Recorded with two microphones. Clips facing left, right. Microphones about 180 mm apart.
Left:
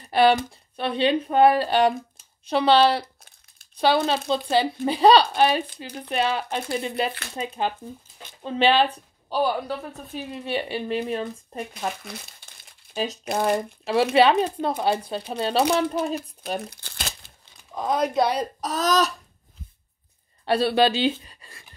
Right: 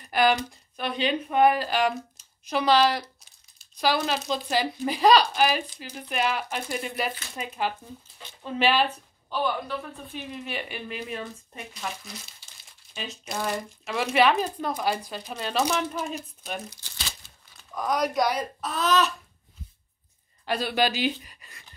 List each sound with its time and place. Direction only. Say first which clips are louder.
0.1 s speech: left 4 dB; 30° left (ahead or behind)
3.2 s crumpling: left 7 dB; 55° left (ahead or behind)
3.7 s speech: left 4 dB; 30° left (ahead or behind)
11.7 s speech: left 3 dB; 60° left (ahead or behind)
12.9 s speech: left 10 dB; 40° left (ahead or behind)
13.2 s speech: left 6 dB; 55° left (ahead or behind)
14.1 s speech: left 2 dB; 30° left (ahead or behind)
15.8 s speech: left 6 dB; 60° left (ahead or behind)
17.7 s speech: left 3 dB; 25° left (ahead or behind)
20.4 s speech: left 6 dB; 30° left (ahead or behind)